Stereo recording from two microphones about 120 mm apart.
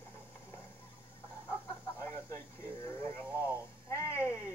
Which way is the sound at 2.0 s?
20° left (ahead or behind).